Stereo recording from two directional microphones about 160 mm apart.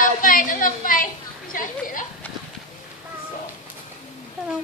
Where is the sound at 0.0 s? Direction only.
55° left (ahead or behind).